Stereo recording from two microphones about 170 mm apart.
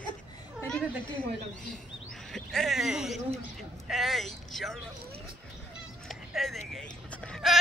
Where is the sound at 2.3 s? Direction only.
Centre (ahead or behind).